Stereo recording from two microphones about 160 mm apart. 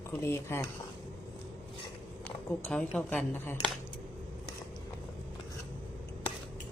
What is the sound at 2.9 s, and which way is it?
Speech, 10° left (ahead or behind).